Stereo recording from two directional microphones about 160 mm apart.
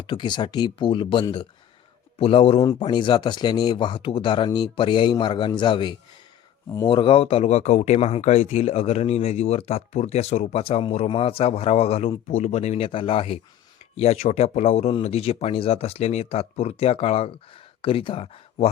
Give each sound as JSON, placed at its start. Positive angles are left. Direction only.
{"t": 0.0, "sound": "speech", "side_deg": 30}